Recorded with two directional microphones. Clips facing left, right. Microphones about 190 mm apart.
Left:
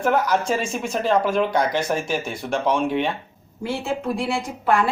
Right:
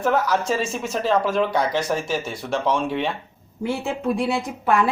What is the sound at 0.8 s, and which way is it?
Speech, centre (ahead or behind).